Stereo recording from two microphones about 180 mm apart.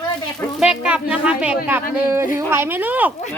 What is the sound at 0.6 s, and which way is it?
Speech, 5° right (ahead or behind).